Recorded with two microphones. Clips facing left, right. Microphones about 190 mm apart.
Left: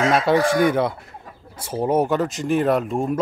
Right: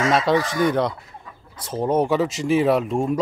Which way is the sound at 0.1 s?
5° left (ahead or behind).